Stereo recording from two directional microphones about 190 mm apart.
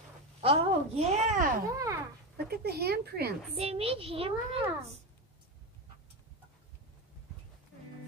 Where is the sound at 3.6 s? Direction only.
30° right (ahead or behind).